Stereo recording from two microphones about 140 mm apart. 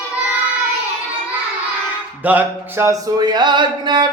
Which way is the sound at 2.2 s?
10° right (ahead or behind).